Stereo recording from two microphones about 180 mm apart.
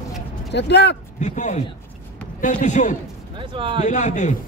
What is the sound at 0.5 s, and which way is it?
Speech, 70° left (ahead or behind).